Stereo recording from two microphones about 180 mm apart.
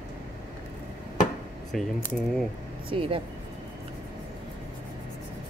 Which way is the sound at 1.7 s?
Centre (ahead or behind).